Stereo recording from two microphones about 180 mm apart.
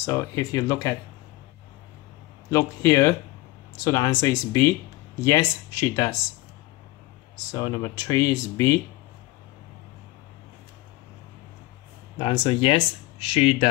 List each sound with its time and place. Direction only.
0.0 s speech: 15° left (ahead or behind)
2.5 s speech: 15° left (ahead or behind)
7.5 s speech: 20° left (ahead or behind)
12.2 s speech: 30° left (ahead or behind)